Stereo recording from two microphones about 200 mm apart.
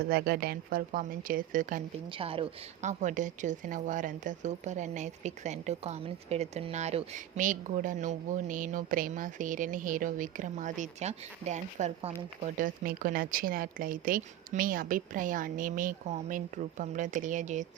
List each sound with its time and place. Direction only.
0.1 s speech: 50° right (ahead or behind)
2.0 s speech: 25° right (ahead or behind)